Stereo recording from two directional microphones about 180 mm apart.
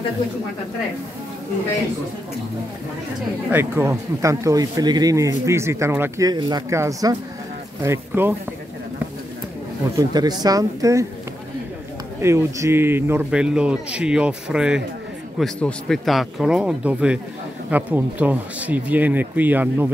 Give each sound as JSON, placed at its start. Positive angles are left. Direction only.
{"t": 3.5, "sound": "speech", "side_deg": -15}
{"t": 9.9, "sound": "speech", "side_deg": -20}
{"t": 12.2, "sound": "a man's voice", "side_deg": -15}